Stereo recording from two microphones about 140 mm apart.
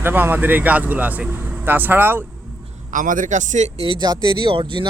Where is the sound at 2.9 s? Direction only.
70° right (ahead or behind).